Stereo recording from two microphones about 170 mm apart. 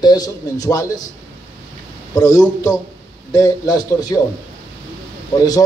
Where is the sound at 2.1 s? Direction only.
20° left (ahead or behind).